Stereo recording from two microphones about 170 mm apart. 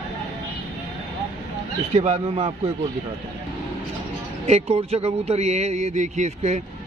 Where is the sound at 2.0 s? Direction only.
40° right (ahead or behind).